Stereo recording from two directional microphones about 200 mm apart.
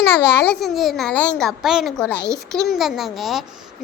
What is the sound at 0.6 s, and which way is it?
A child's voice, centre (ahead or behind).